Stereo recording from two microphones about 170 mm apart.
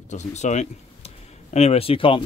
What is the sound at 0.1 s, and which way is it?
Speech, 45° left (ahead or behind).